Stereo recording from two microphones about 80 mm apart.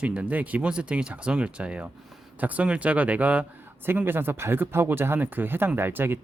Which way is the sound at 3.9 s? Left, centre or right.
Right.